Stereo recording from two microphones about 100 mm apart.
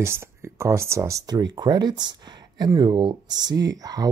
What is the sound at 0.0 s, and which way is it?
Speech, 25° right (ahead or behind).